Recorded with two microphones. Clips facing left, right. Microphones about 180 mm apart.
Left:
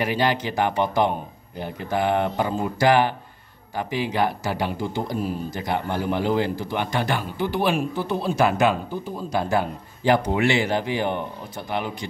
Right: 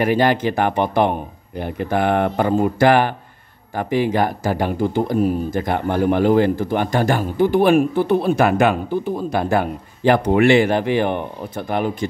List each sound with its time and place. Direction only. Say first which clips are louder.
0.0 s speech: right 6 dB; 50° right (ahead or behind)